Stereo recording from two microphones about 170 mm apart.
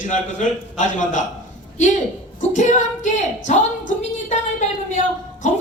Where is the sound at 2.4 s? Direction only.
45° left (ahead or behind).